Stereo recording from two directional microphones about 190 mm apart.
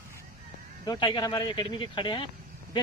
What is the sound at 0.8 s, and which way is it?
Speech, 20° left (ahead or behind).